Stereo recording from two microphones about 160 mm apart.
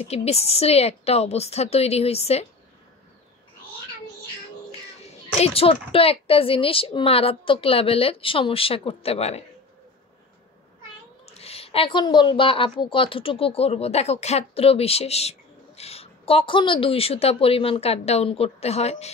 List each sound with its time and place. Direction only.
0.0 s a woman's voice: 40° left (ahead or behind)
5.3 s a woman's voice: 40° left (ahead or behind)
11.2 s a woman's voice: 40° left (ahead or behind)